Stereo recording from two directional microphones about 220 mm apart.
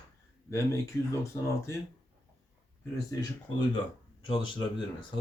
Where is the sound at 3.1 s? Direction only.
15° left (ahead or behind).